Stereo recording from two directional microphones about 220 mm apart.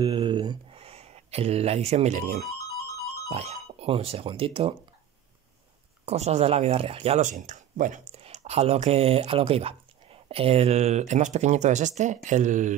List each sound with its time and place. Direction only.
0.0 s a sound: 25° right (ahead or behind)
3.3 s speech: 30° right (ahead or behind)
6.0 s speech: 30° right (ahead or behind)